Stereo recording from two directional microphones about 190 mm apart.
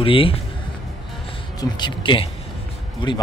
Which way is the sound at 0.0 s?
30° left (ahead or behind).